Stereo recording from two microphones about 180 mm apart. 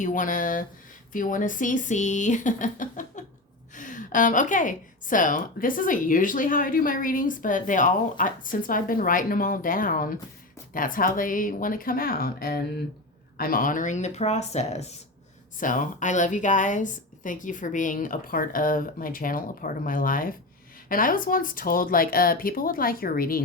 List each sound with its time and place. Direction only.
0.0 s a woman's voice: 45° left (ahead or behind)